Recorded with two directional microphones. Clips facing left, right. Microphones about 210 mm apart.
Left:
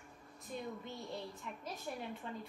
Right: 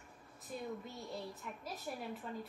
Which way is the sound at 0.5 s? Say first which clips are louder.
Even; 5° right (ahead or behind).